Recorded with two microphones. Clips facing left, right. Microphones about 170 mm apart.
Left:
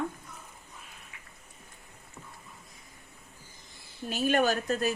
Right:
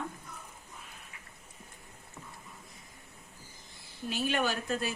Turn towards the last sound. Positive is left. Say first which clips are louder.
# left 5 dB
turn(degrees=40)  # may be behind; listen again after turning